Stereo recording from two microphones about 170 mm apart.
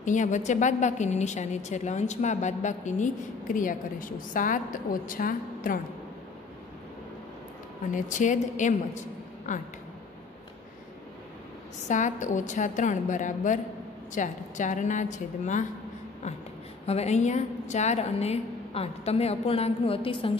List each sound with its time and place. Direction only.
0.0 s a woman's voice: 45° left (ahead or behind)
7.9 s a woman's voice: 45° left (ahead or behind)
11.9 s a woman's voice: 45° left (ahead or behind)
16.8 s a woman's voice: 40° left (ahead or behind)